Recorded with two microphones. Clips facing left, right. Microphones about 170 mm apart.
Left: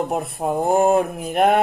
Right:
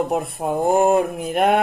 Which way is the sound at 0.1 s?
Centre (ahead or behind).